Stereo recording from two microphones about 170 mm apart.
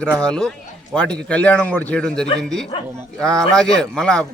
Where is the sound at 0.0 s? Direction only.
5° left (ahead or behind).